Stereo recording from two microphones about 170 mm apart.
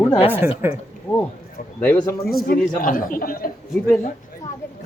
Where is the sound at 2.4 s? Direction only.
55° left (ahead or behind).